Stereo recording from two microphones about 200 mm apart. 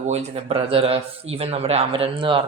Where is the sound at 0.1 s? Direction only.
30° right (ahead or behind).